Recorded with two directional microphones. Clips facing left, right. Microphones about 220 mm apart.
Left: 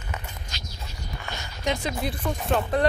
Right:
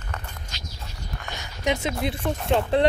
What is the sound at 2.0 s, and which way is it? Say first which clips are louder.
Speech: right 2 dB; 25° right (ahead or behind).